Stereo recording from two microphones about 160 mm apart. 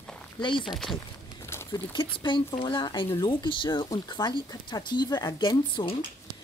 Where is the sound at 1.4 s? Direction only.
15° left (ahead or behind).